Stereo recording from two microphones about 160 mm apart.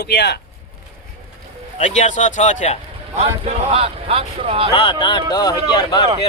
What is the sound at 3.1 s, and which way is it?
Speech, 40° right (ahead or behind).